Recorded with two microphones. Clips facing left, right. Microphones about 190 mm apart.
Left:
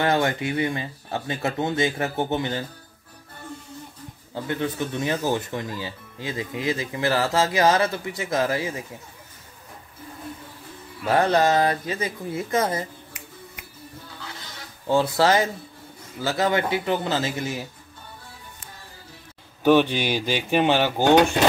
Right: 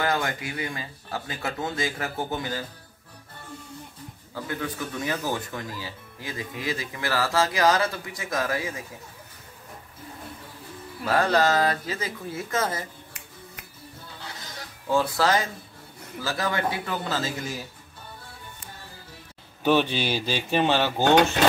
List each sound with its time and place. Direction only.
0.0 s speech: 25° left (ahead or behind)
4.3 s speech: 25° left (ahead or behind)
11.1 s speech: 20° left (ahead or behind)
14.9 s speech: 30° left (ahead or behind)
19.6 s speech: 15° left (ahead or behind)